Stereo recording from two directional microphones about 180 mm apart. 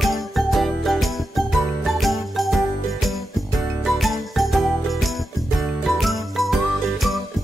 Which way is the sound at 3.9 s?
Centre (ahead or behind).